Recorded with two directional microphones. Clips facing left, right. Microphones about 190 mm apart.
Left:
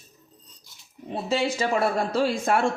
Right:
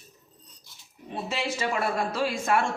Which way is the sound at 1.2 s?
30° left (ahead or behind).